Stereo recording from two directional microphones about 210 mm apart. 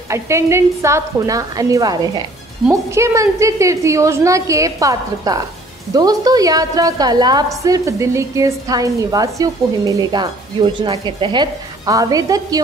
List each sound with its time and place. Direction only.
0.1 s a woman's voice: 15° right (ahead or behind)